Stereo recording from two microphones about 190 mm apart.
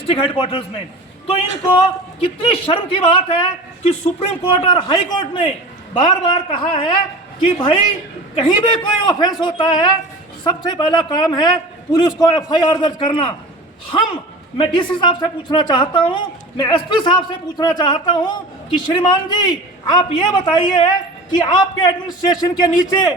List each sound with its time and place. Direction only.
0.1 s a man's voice: 25° left (ahead or behind)
2.2 s a man's voice: 30° left (ahead or behind)
14.6 s a man's voice: 25° left (ahead or behind)